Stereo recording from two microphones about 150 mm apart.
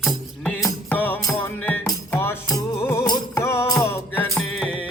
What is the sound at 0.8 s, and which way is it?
Music, 10° left (ahead or behind).